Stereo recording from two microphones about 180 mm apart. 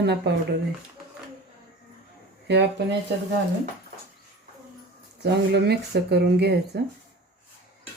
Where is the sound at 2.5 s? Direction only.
75° right (ahead or behind).